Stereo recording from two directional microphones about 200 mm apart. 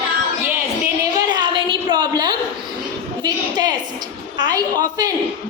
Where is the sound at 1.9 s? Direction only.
20° right (ahead or behind).